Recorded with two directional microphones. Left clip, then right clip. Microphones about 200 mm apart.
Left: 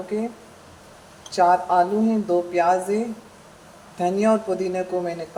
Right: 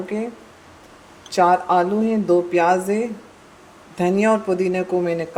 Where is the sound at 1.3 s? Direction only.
55° right (ahead or behind).